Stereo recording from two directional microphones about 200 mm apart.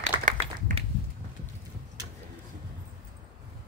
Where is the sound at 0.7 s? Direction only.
40° right (ahead or behind).